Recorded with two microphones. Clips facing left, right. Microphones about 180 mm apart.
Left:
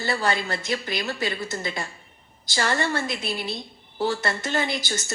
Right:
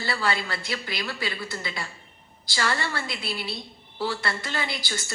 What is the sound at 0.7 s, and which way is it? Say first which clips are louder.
A woman's voice: left 6 dB; 45° left (ahead or behind).